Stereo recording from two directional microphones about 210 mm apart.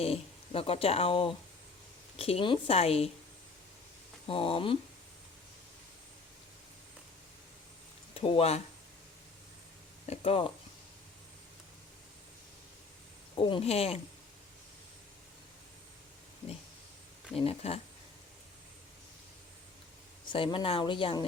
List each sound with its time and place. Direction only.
0.0 s speech: 30° left (ahead or behind)
4.3 s speech: 25° left (ahead or behind)
8.1 s speech: 25° left (ahead or behind)
10.1 s speech: 25° left (ahead or behind)
13.4 s speech: 25° left (ahead or behind)
17.3 s speech: 30° left (ahead or behind)
20.3 s speech: 25° left (ahead or behind)